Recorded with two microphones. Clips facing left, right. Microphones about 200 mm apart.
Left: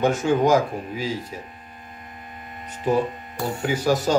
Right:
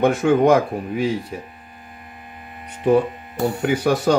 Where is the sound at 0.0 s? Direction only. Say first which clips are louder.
Right 4 dB; 60° right (ahead or behind).